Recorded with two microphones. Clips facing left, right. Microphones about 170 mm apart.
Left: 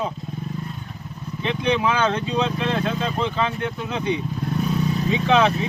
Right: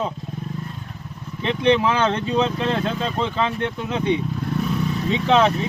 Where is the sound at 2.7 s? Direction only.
30° right (ahead or behind).